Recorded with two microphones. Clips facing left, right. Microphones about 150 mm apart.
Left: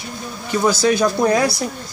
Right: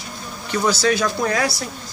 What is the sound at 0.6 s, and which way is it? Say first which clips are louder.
Speech: left 3 dB; 15° left (ahead or behind).